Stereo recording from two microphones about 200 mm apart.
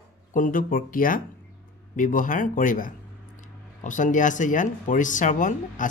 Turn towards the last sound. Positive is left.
turn(degrees=40)  # may be behind; listen again after turning